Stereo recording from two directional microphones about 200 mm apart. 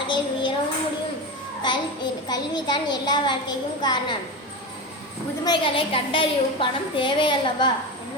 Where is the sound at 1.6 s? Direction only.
20° left (ahead or behind).